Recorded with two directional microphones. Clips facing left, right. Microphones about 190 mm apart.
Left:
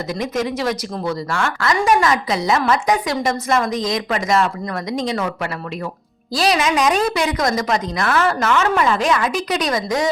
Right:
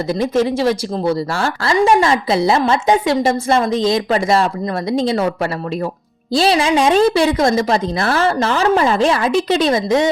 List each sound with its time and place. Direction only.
0.1 s a woman's voice: 30° right (ahead or behind)